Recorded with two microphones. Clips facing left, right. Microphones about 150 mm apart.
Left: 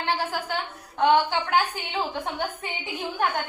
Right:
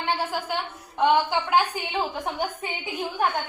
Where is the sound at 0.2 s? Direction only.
10° right (ahead or behind).